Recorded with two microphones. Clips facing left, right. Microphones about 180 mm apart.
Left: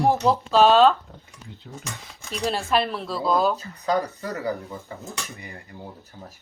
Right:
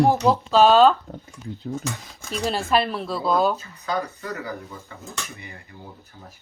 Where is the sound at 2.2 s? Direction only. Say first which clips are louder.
Right 1 dB; centre (ahead or behind).